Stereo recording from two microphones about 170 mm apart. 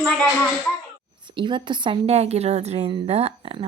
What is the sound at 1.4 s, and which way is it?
A woman's voice, 30° right (ahead or behind).